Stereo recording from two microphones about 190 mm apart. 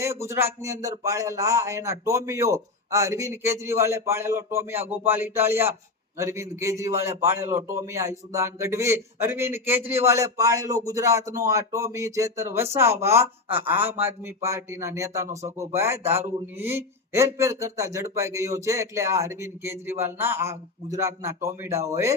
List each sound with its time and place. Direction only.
0.0 s a man's voice: 15° right (ahead or behind)